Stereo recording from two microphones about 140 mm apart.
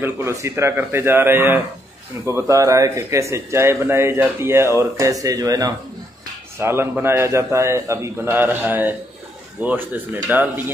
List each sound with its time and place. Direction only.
0.0 s a man's voice: 20° right (ahead or behind)